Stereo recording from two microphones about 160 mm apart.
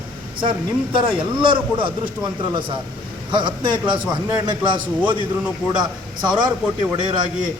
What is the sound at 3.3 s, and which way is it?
Speech, 30° right (ahead or behind).